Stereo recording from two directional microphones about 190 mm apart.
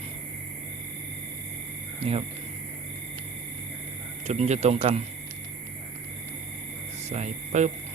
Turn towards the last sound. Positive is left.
turn(degrees=-35)  # may be behind; listen again after turning